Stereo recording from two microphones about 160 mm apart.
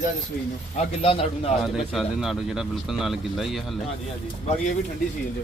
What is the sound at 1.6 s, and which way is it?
Speech, centre (ahead or behind).